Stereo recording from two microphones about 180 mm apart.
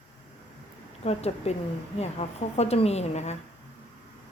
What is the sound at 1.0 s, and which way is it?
A woman's voice, 35° left (ahead or behind).